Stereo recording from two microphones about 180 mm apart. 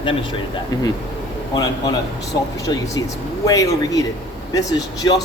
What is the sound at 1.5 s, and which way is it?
Speech, 20° left (ahead or behind).